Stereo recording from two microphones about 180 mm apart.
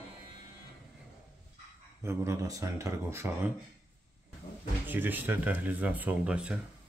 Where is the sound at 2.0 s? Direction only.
15° right (ahead or behind).